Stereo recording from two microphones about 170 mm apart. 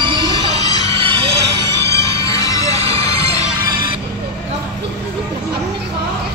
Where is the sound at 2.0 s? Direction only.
20° left (ahead or behind).